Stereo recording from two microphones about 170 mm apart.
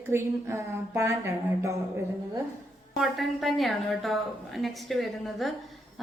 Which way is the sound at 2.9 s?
Centre (ahead or behind).